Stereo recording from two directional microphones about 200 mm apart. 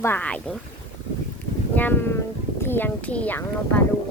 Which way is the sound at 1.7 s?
10° left (ahead or behind).